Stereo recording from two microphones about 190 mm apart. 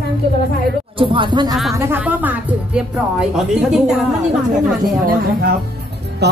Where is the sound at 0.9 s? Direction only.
25° right (ahead or behind).